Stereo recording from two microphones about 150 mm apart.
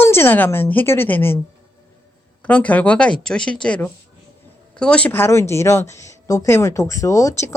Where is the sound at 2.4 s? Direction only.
10° left (ahead or behind).